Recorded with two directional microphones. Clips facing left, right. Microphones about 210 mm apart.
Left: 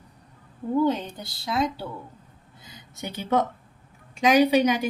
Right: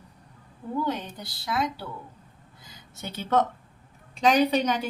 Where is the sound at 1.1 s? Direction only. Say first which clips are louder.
Left 2 dB; 25° left (ahead or behind).